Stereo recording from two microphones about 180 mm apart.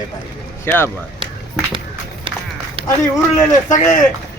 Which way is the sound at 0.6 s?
10° left (ahead or behind).